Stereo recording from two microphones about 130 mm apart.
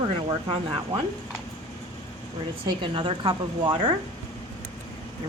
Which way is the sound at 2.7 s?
40° right (ahead or behind).